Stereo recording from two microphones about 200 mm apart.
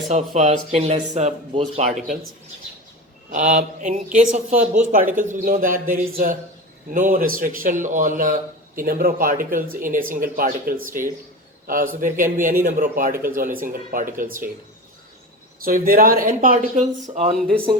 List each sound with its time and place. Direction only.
0.1 s speech: 35° right (ahead or behind)
3.3 s a man's voice: 40° right (ahead or behind)
15.6 s a man's voice: 45° right (ahead or behind)